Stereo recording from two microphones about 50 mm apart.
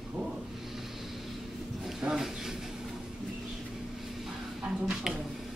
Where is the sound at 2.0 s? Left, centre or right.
Centre.